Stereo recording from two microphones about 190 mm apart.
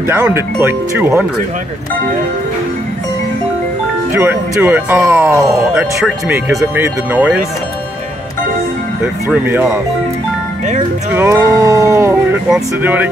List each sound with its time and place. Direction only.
0.0 s speech: 10° right (ahead or behind)
4.1 s speech: 10° right (ahead or behind)
9.3 s speech: 10° right (ahead or behind)
11.1 s speech: 15° right (ahead or behind)